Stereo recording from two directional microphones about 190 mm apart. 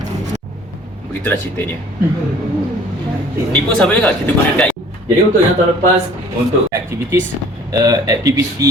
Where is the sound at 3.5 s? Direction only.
10° left (ahead or behind).